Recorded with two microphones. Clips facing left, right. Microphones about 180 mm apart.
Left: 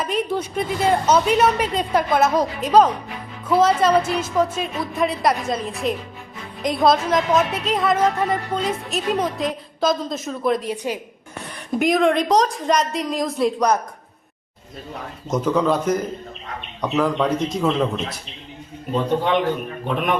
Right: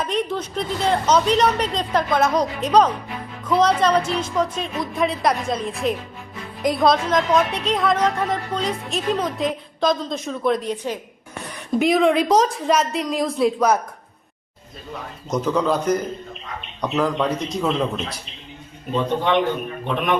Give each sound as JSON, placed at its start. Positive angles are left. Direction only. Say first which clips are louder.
{"t": 0.0, "sound": "a woman's voice", "louder": "left 1 dB", "side_deg": 5}
{"t": 15.3, "sound": "a woman's voice", "louder": "left 1 dB", "side_deg": 0}